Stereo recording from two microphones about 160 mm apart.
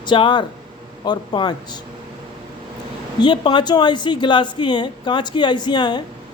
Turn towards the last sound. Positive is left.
turn(degrees=25)  # may be behind; listen again after turning